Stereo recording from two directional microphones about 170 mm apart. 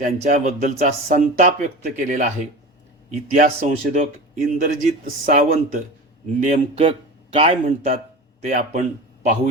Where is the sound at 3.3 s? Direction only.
45° right (ahead or behind).